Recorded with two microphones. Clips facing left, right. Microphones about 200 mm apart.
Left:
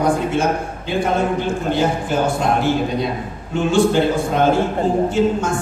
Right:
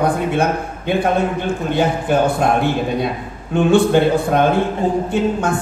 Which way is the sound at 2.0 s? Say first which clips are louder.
Right 3 dB; 60° right (ahead or behind).